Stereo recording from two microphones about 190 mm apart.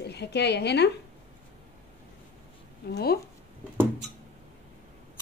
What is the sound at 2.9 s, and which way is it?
Speech, 60° left (ahead or behind).